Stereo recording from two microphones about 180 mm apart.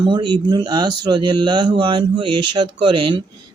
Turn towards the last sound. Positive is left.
turn(degrees=-25)  # may be behind; listen again after turning